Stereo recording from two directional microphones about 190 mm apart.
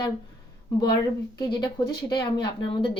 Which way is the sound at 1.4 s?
25° left (ahead or behind).